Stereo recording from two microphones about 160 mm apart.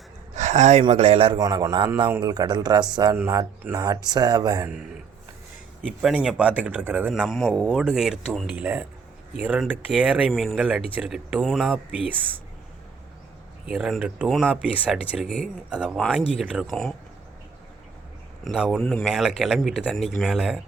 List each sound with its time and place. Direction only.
0.3 s speech: 45° right (ahead or behind)
1.4 s speech: 20° right (ahead or behind)
5.8 s a man's voice: 5° right (ahead or behind)
11.7 s a man's voice: 10° right (ahead or behind)
13.7 s speech: 5° right (ahead or behind)
16.0 s speech: 5° left (ahead or behind)
18.4 s speech: 5° right (ahead or behind)